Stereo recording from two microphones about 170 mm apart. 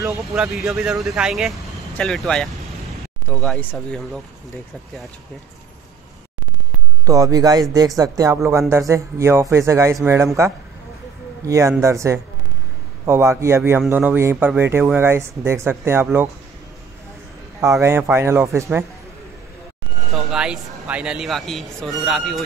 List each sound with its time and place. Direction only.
0.0 s speech: 5° right (ahead or behind)
7.1 s a man's voice: 20° right (ahead or behind)
17.6 s a man's voice: 15° right (ahead or behind)
20.2 s speech: 5° right (ahead or behind)